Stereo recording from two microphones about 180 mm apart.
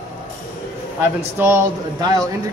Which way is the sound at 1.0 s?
10° right (ahead or behind).